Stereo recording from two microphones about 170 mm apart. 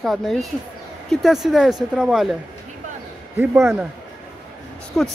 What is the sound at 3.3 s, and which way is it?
Speech, 10° right (ahead or behind).